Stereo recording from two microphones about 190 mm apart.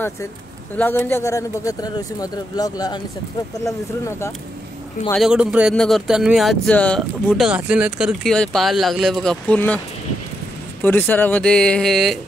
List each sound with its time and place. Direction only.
0.7 s speech: 10° left (ahead or behind)
5.1 s speech: 5° right (ahead or behind)
10.8 s speech: 10° left (ahead or behind)